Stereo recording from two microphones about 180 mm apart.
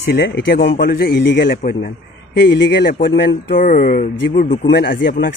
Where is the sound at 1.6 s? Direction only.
50° left (ahead or behind).